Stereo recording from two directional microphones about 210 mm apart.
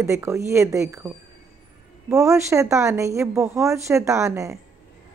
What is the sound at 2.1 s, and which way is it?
A woman's voice, 15° right (ahead or behind).